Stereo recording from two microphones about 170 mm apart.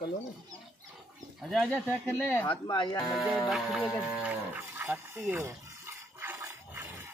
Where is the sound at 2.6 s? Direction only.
30° left (ahead or behind).